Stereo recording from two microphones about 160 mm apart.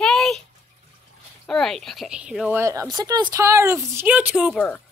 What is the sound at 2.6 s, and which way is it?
Speech, 20° right (ahead or behind).